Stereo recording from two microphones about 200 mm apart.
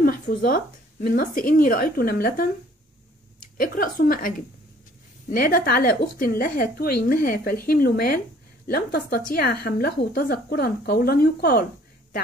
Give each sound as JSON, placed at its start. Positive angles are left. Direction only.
{"t": 0.0, "sound": "speech", "side_deg": 45}
{"t": 3.5, "sound": "speech", "side_deg": 45}
{"t": 5.3, "sound": "speech", "side_deg": 45}